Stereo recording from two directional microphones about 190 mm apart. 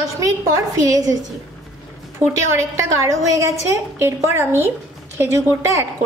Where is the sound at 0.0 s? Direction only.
20° right (ahead or behind).